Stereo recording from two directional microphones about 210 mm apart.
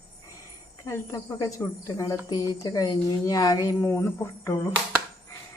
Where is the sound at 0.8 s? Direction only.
15° left (ahead or behind).